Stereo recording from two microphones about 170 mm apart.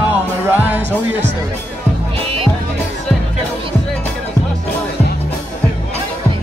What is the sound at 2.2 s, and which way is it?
Music, 35° right (ahead or behind).